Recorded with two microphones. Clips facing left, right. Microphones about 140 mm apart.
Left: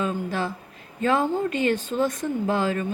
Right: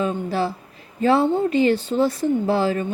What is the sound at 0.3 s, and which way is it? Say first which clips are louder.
Speech: right 5 dB; 35° right (ahead or behind).